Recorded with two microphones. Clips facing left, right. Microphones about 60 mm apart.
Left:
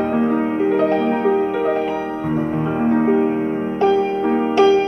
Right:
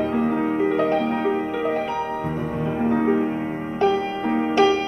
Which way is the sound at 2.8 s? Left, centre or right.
Left.